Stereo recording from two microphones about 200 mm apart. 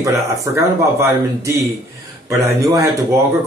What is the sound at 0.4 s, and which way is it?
Speech, 15° right (ahead or behind).